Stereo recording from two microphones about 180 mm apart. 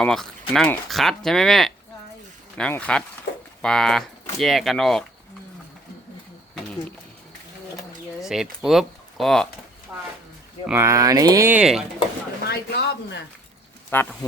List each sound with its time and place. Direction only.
0.0 s speech: centre (ahead or behind)
8.3 s speech: centre (ahead or behind)
9.9 s a sound: 10° right (ahead or behind)
10.7 s speech: 15° right (ahead or behind)
12.5 s speech: 60° left (ahead or behind)
13.9 s speech: 10° left (ahead or behind)